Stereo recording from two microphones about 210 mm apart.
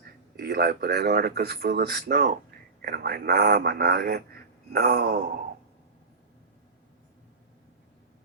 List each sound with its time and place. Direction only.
0.3 s speech: 50° right (ahead or behind)